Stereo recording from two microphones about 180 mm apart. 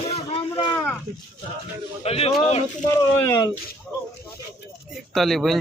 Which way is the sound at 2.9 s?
15° left (ahead or behind).